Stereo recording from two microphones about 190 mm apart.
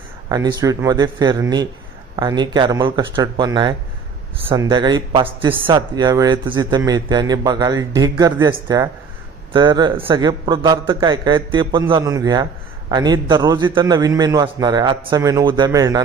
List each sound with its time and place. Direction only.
0.3 s speech: 20° right (ahead or behind)